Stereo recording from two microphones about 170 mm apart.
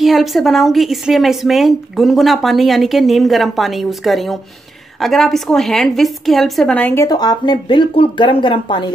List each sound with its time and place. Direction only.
0.0 s a woman's voice: centre (ahead or behind)
7.1 s speech: 25° left (ahead or behind)